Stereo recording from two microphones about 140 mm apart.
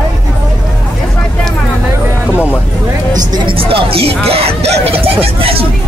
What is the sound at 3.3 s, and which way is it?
Music, 40° right (ahead or behind).